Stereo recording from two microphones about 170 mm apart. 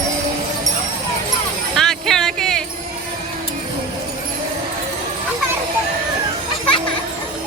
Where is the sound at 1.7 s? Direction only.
Centre (ahead or behind).